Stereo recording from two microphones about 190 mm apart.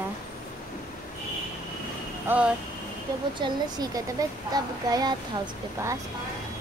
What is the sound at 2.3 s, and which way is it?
A woman's voice, 10° right (ahead or behind).